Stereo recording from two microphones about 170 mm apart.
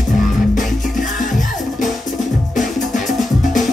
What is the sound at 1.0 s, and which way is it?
Music, 50° left (ahead or behind).